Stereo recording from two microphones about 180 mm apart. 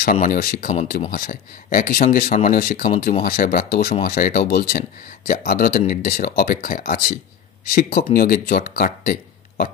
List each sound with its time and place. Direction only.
0.0 s speech: 50° left (ahead or behind)